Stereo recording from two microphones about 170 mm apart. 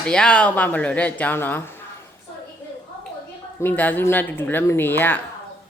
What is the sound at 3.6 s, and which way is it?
A woman's voice, 10° left (ahead or behind).